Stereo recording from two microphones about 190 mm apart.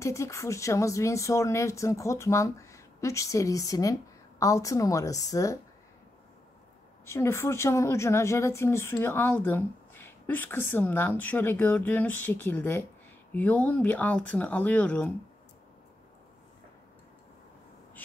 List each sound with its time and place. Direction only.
0.0 s speech: 15° left (ahead or behind)
7.1 s speech: 15° left (ahead or behind)